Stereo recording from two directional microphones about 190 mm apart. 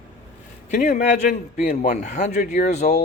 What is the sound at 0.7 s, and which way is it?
Speech, 40° left (ahead or behind).